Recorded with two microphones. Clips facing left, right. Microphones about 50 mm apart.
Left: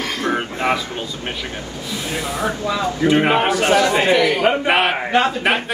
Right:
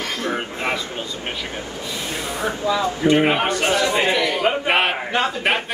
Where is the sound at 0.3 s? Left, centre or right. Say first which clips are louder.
Left 6 dB; centre.